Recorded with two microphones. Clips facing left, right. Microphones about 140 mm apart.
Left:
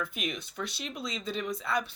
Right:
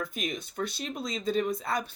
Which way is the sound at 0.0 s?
40° right (ahead or behind).